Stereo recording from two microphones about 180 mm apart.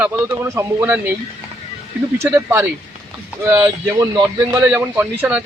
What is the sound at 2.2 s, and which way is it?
Speech, 15° right (ahead or behind).